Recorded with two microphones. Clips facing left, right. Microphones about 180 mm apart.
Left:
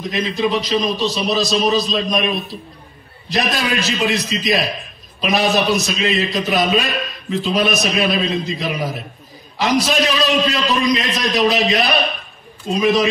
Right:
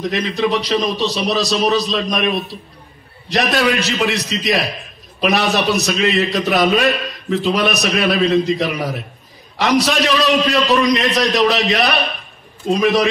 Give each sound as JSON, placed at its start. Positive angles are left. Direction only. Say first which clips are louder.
{"t": 0.1, "sound": "a man's voice", "louder": "left 2 dB", "side_deg": -70}